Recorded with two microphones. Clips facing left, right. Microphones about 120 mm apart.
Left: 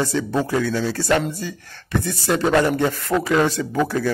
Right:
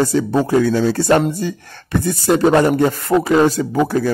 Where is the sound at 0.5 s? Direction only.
45° right (ahead or behind).